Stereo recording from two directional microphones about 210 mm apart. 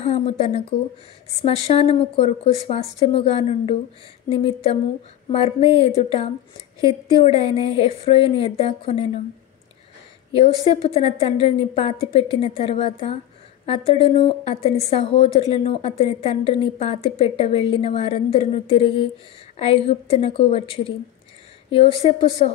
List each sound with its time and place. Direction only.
0.0 s a woman's voice: 30° left (ahead or behind)
10.7 s a woman's voice: 30° left (ahead or behind)